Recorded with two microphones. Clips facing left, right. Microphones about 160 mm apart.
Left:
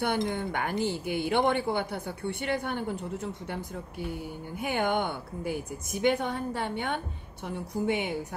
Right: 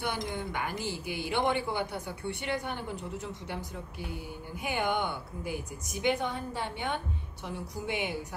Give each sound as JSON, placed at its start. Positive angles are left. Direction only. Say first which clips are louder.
{"t": 0.3, "sound": "speech", "louder": "left 4 dB", "side_deg": 55}
{"t": 4.6, "sound": "speech", "louder": "left 3 dB", "side_deg": 50}